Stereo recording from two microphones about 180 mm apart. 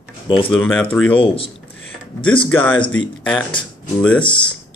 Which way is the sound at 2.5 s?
10° left (ahead or behind).